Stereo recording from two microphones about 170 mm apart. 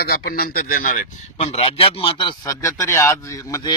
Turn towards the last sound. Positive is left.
turn(degrees=20)  # may be behind; listen again after turning